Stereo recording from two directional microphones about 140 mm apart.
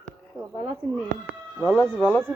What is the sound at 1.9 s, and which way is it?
Speech, 10° left (ahead or behind).